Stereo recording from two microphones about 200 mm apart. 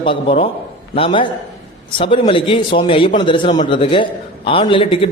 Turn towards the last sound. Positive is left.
turn(degrees=25)  # may be behind; listen again after turning